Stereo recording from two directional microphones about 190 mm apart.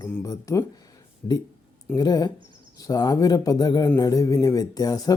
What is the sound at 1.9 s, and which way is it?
Speech, 20° left (ahead or behind).